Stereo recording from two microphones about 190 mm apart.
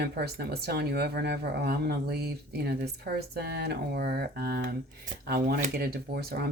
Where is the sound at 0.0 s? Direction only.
55° right (ahead or behind).